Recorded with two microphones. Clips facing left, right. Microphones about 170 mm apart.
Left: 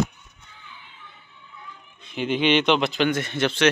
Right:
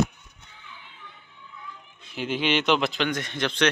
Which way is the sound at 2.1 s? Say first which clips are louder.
Left 5 dB; 5° right (ahead or behind).